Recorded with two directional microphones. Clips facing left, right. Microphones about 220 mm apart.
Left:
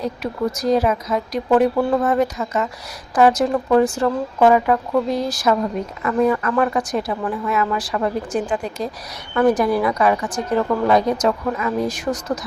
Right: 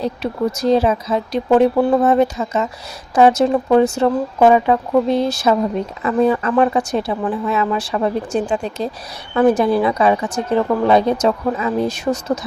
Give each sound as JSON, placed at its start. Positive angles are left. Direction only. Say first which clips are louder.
{"t": 0.0, "sound": "a woman's voice", "louder": "right 3 dB", "side_deg": -30}